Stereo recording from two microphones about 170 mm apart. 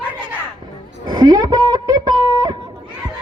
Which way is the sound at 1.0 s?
25° right (ahead or behind).